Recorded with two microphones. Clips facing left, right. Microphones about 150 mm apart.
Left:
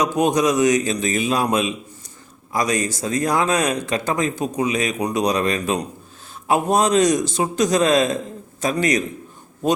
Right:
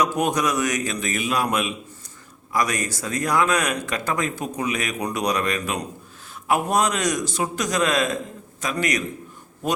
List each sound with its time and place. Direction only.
0.0 s speech: 20° left (ahead or behind)